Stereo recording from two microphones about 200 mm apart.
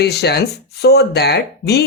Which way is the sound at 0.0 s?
55° left (ahead or behind).